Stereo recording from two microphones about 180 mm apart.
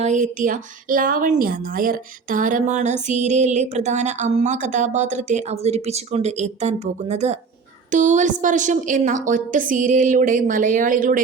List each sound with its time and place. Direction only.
0.0 s a woman's voice: 40° right (ahead or behind)